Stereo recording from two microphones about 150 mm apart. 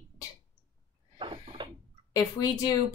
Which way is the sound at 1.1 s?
35° right (ahead or behind).